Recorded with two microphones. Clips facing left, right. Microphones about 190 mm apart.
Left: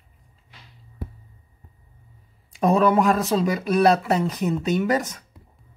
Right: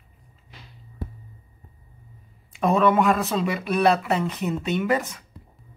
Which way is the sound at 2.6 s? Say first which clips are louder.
Left 1 dB; 35° left (ahead or behind).